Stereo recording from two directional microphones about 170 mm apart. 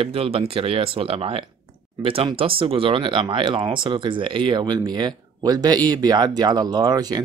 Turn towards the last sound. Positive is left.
turn(degrees=-25)  # may be behind; listen again after turning